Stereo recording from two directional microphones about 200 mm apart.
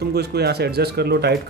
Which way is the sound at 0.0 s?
55° right (ahead or behind).